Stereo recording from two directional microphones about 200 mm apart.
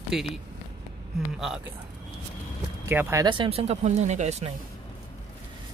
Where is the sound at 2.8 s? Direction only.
15° right (ahead or behind); by 4.5 s 35° right (ahead or behind).